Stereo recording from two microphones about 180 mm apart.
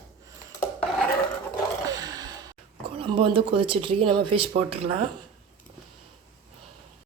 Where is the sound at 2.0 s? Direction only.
20° right (ahead or behind).